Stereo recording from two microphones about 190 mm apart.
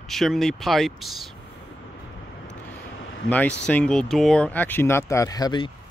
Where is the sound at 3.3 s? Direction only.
5° left (ahead or behind).